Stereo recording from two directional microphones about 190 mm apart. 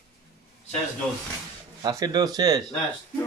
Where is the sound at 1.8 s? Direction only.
20° right (ahead or behind).